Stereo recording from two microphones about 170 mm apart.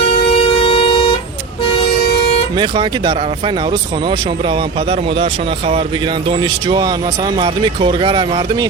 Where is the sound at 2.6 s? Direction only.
30° right (ahead or behind).